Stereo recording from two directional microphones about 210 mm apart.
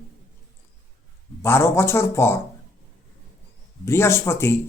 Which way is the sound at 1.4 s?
10° left (ahead or behind).